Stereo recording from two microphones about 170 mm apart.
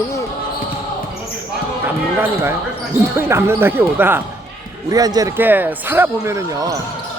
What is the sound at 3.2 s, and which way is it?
Speech, 15° right (ahead or behind).